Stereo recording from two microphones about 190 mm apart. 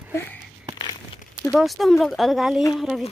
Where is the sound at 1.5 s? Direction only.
Centre (ahead or behind).